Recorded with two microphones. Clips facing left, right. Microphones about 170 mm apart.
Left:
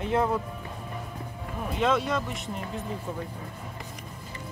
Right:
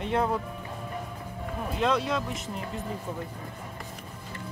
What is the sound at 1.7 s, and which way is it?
Speech, centre (ahead or behind).